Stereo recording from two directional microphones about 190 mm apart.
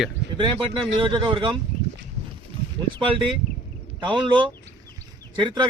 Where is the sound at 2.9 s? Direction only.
25° right (ahead or behind).